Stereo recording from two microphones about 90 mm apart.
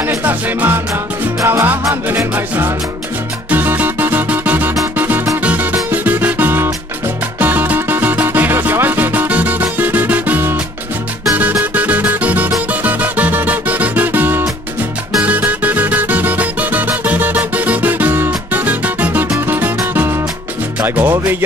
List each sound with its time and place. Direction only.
0.0 s music: 20° right (ahead or behind)
11.7 s music: 15° right (ahead or behind)